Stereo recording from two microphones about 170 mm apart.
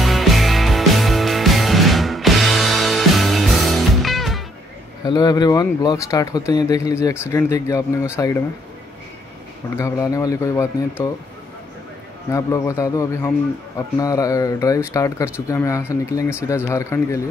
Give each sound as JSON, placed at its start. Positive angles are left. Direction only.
{"t": 0.0, "sound": "music", "side_deg": 0}
{"t": 5.0, "sound": "speech", "side_deg": 25}
{"t": 9.8, "sound": "speech", "side_deg": 20}
{"t": 12.3, "sound": "speech", "side_deg": 20}